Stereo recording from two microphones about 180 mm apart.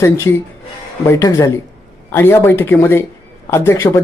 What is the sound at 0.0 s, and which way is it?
Speech, 15° left (ahead or behind).